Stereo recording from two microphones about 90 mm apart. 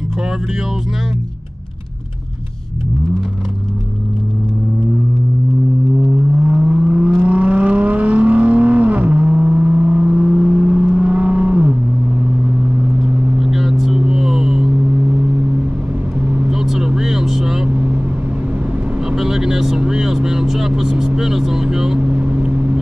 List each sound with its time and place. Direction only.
6.4 s a sound: 10° right (ahead or behind)
7.1 s vehicle: 20° right (ahead or behind)
13.0 s vehicle: 5° right (ahead or behind)
16.4 s vehicle: 5° right (ahead or behind)
19.0 s vehicle: 5° right (ahead or behind)
22.1 s vehicle: 15° right (ahead or behind)